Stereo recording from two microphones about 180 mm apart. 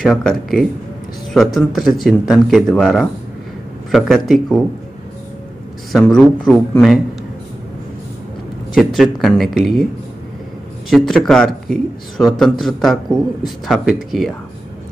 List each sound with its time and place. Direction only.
0.0 s a man's voice: 5° left (ahead or behind)
5.9 s a man's voice: centre (ahead or behind)
8.7 s a man's voice: centre (ahead or behind)
10.9 s a man's voice: centre (ahead or behind)